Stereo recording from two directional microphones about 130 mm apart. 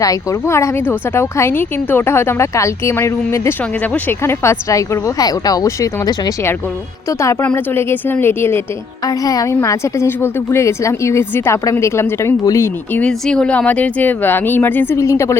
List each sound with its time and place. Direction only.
0.0 s a woman's voice: 25° left (ahead or behind)